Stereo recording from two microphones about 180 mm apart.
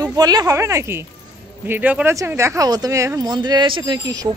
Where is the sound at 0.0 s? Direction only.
20° right (ahead or behind).